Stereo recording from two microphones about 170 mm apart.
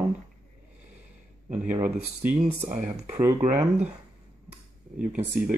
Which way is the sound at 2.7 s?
45° right (ahead or behind).